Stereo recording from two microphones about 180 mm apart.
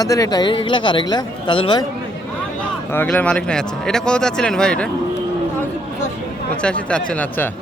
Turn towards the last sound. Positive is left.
turn(degrees=10)  # may be behind; listen again after turning